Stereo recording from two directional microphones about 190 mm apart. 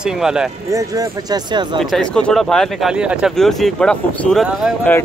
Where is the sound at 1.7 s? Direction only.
Centre (ahead or behind).